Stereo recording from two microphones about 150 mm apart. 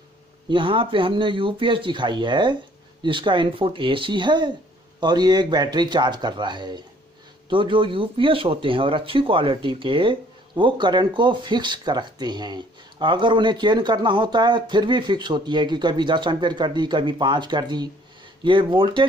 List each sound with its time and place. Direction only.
0.5 s a man's voice: 35° right (ahead or behind)